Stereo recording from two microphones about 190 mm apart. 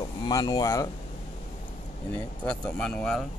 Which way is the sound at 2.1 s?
5° left (ahead or behind).